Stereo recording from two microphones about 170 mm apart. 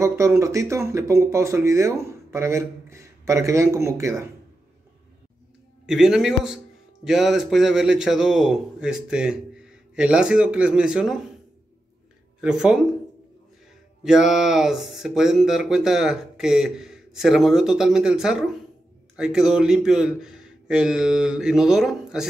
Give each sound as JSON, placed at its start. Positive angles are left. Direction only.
{"t": 0.0, "sound": "speech", "side_deg": -15}
{"t": 5.9, "sound": "speech", "side_deg": -5}
{"t": 12.4, "sound": "speech", "side_deg": -5}
{"t": 14.0, "sound": "speech", "side_deg": -5}